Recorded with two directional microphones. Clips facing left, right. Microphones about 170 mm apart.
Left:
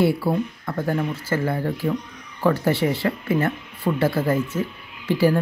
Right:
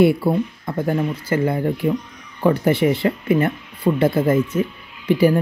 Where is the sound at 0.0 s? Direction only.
20° right (ahead or behind).